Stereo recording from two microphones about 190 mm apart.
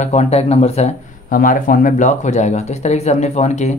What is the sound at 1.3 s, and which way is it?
Speech, 45° left (ahead or behind).